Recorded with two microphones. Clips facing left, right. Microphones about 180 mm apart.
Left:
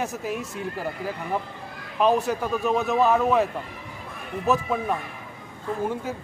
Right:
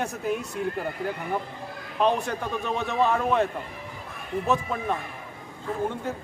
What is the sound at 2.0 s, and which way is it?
Speech, 5° left (ahead or behind).